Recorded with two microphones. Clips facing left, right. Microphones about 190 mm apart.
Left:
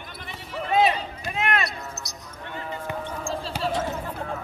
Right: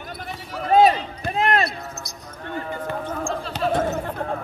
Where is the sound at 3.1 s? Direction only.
50° right (ahead or behind).